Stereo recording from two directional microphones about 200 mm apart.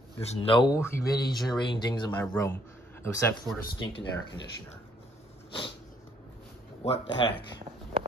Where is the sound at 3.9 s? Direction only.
60° left (ahead or behind).